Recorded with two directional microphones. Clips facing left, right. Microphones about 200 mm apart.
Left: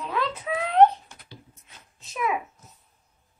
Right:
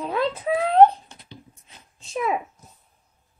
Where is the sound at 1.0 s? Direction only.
25° right (ahead or behind).